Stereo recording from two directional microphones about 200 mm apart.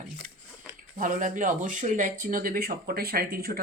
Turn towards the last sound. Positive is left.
turn(degrees=-45)  # may be behind; listen again after turning